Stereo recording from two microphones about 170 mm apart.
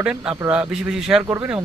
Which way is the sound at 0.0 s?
5° right (ahead or behind).